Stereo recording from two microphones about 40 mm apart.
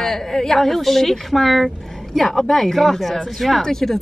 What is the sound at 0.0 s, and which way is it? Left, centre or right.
A woman's voice, centre.